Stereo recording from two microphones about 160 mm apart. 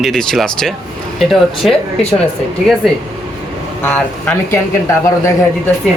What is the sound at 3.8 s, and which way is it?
Speech, 15° left (ahead or behind).